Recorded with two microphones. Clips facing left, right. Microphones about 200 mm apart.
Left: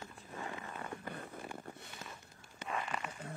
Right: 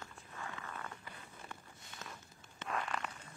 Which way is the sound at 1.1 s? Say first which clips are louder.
Left 9 dB; 50° left (ahead or behind).